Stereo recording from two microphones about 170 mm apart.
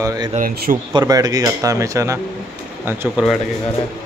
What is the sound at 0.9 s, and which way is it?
Speech, 25° right (ahead or behind).